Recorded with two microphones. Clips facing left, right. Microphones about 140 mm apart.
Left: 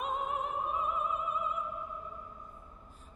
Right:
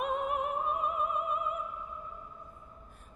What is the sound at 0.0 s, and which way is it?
Opera, 65° right (ahead or behind).